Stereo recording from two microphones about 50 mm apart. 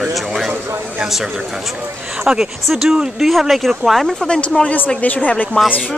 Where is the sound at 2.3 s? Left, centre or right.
Centre.